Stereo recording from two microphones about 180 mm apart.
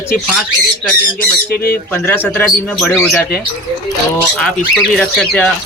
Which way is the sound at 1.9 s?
10° left (ahead or behind).